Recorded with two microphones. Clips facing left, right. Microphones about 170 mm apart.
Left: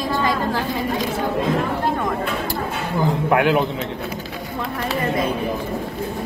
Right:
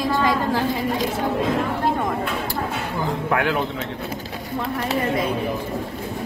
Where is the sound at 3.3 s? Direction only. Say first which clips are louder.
Left 5 dB; 15° left (ahead or behind).